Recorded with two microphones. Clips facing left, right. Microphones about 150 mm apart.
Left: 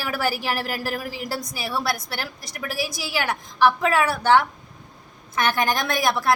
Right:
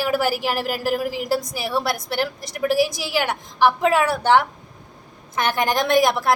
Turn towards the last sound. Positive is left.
turn(degrees=-20)  # may be behind; listen again after turning